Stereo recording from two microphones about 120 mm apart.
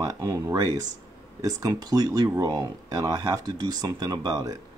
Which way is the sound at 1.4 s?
30° right (ahead or behind).